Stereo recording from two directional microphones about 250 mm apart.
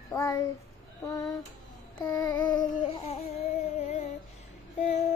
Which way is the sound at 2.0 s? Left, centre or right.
Centre.